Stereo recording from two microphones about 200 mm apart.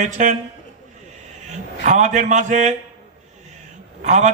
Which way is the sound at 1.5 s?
35° right (ahead or behind).